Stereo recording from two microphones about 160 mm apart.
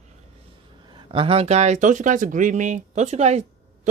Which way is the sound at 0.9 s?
35° right (ahead or behind).